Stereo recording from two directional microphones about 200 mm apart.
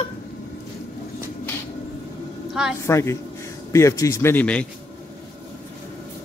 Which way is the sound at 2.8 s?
15° left (ahead or behind).